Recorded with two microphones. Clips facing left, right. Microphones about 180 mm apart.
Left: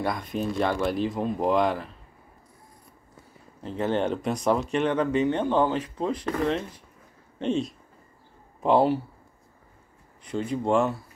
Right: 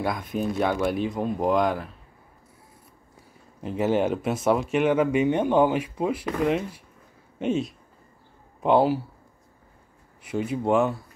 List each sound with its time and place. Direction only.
0.0 s speech: centre (ahead or behind)
3.6 s speech: 10° right (ahead or behind)
10.2 s speech: 5° right (ahead or behind)